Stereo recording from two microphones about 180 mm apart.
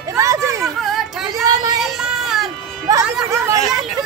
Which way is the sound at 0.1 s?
15° right (ahead or behind).